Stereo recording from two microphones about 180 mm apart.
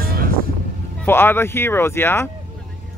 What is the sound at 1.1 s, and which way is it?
Speech, 10° left (ahead or behind).